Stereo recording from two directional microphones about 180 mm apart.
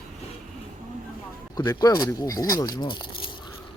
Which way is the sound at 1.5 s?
20° left (ahead or behind).